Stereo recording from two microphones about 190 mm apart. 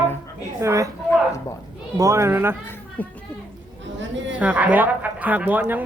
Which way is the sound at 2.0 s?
15° right (ahead or behind).